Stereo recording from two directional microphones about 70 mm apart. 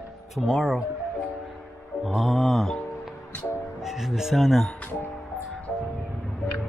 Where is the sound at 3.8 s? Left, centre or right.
Centre.